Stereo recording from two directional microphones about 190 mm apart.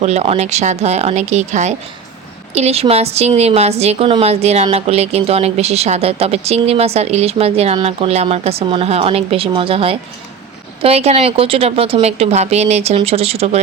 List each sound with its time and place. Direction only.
0.0 s a woman's voice: 35° right (ahead or behind)